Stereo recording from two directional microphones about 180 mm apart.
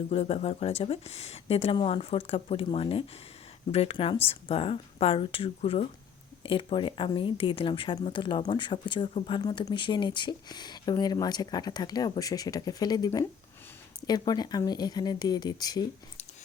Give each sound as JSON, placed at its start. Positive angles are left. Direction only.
{"t": 0.1, "sound": "speech", "side_deg": 35}